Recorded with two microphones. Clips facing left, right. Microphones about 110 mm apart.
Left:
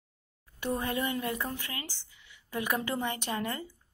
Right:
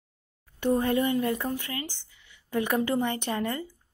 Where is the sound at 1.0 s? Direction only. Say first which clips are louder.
Right 6 dB; 30° right (ahead or behind).